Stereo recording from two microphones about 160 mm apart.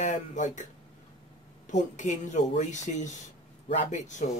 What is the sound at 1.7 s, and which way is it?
Speech, 50° left (ahead or behind).